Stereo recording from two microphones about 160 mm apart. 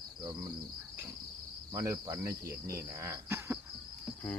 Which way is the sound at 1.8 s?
20° right (ahead or behind).